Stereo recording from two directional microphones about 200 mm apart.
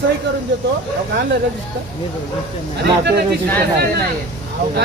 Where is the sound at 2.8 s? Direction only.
55° right (ahead or behind).